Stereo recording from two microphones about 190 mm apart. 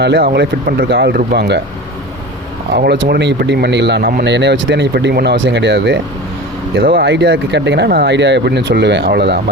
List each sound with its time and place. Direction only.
0.0 s speech: 65° right (ahead or behind)
2.7 s speech: 60° right (ahead or behind)
6.7 s speech: 55° right (ahead or behind)